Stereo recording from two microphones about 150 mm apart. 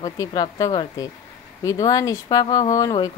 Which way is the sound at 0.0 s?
25° left (ahead or behind).